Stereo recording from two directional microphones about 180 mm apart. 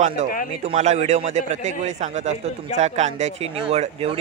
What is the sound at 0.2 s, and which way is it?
Speech, 40° right (ahead or behind).